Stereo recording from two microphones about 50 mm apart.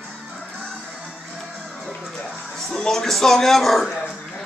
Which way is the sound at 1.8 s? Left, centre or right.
Centre.